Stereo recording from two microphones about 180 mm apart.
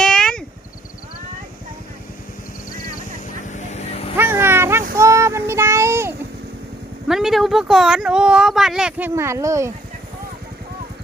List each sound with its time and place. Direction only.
0.0 s a sound: 5° left (ahead or behind)
3.5 s vehicle: 40° left (ahead or behind)
4.2 s child singing: 15° right (ahead or behind)
7.1 s speech: centre (ahead or behind)